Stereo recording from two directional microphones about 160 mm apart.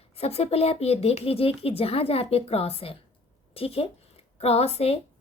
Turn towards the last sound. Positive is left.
turn(degrees=40)  # may be behind; listen again after turning